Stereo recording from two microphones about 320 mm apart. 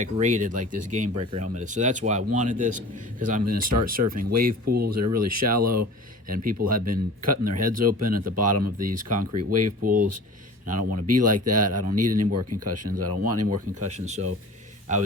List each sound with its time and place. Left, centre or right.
0.0 s speech: right
3.4 s speech: right
4.4 s speech: right
4.9 s speech: right
9.8 s speech: right
10.7 s speech: right
13.9 s speech: right